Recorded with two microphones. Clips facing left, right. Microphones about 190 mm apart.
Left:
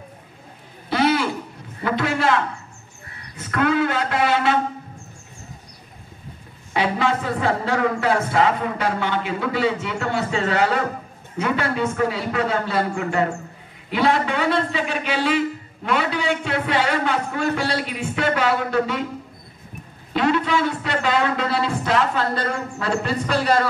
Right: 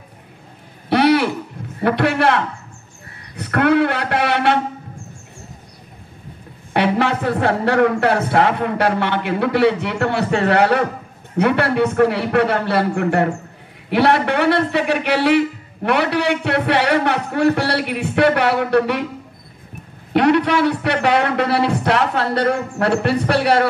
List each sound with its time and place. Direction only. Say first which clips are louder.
0.8 s a sound: right 5 dB; 65° right (ahead or behind)
1.8 s a man's voice: right 5 dB; 65° right (ahead or behind)
6.7 s a man's voice: right 4 dB; 65° right (ahead or behind)
20.1 s a man's voice: right 5 dB; 65° right (ahead or behind)